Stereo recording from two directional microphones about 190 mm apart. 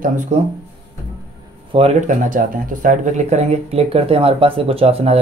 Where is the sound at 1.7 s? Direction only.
35° right (ahead or behind).